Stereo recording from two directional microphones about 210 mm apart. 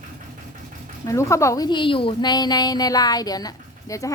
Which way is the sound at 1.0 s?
15° left (ahead or behind).